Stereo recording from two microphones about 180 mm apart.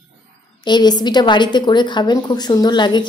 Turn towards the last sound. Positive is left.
turn(degrees=25)  # may be behind; listen again after turning